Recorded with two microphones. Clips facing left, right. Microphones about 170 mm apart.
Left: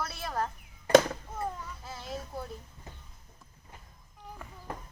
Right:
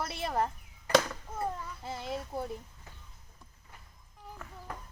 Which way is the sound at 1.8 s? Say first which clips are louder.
Right 4 dB; 55° right (ahead or behind).